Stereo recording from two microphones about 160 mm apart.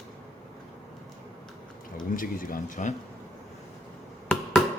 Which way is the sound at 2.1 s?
60° left (ahead or behind).